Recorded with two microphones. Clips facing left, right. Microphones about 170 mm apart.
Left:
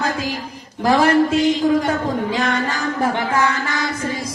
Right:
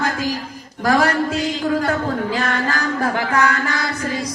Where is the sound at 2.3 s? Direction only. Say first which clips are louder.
Left 1 dB; 20° left (ahead or behind).